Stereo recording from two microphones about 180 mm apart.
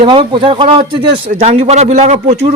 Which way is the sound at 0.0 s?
30° right (ahead or behind).